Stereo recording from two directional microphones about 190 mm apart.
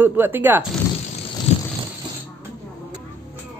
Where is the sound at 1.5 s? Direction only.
35° left (ahead or behind).